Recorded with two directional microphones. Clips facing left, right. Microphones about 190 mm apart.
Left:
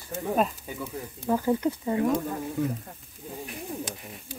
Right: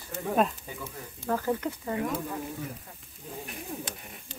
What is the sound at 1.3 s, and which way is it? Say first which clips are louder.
Speech: left 4 dB; 15° left (ahead or behind).